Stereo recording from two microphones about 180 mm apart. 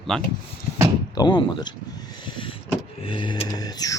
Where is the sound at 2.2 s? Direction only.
25° left (ahead or behind).